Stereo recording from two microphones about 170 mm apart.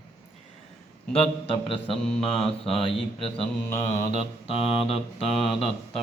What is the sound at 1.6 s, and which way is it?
Mantra, 35° left (ahead or behind).